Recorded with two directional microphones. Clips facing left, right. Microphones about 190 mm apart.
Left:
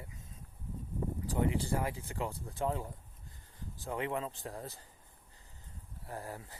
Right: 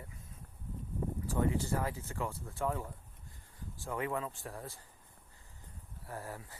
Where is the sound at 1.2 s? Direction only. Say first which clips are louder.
Even; 15° left (ahead or behind).